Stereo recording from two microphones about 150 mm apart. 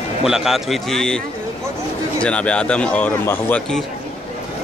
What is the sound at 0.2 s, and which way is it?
Speech, centre (ahead or behind).